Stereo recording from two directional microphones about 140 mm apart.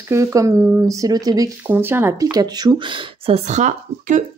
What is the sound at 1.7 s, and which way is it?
Speech, 15° right (ahead or behind).